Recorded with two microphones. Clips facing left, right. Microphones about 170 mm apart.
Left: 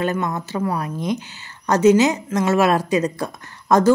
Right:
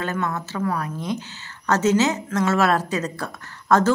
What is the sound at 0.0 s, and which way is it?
A woman's voice, 15° left (ahead or behind).